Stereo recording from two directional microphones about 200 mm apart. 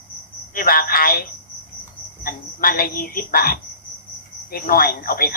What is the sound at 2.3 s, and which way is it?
A man's voice, 45° left (ahead or behind).